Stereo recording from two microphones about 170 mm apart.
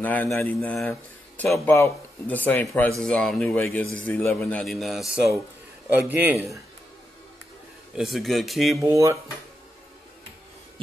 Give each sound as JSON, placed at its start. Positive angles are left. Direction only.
{"t": 0.0, "sound": "speech", "side_deg": 10}
{"t": 0.6, "sound": "a man's voice", "side_deg": 0}
{"t": 7.9, "sound": "speech", "side_deg": 0}
{"t": 8.7, "sound": "a man's voice", "side_deg": -20}